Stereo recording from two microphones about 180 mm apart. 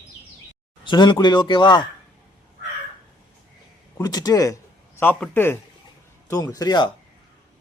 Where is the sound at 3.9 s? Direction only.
20° left (ahead or behind).